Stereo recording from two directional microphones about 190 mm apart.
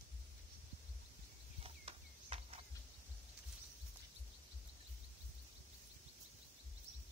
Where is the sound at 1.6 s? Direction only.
30° right (ahead or behind).